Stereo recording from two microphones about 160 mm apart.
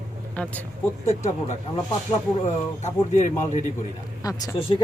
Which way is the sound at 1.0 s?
45° left (ahead or behind).